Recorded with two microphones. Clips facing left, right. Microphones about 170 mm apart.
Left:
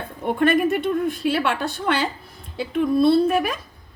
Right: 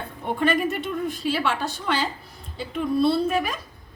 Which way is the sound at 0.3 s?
55° left (ahead or behind).